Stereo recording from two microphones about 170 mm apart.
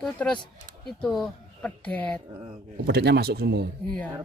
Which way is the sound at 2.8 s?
70° right (ahead or behind).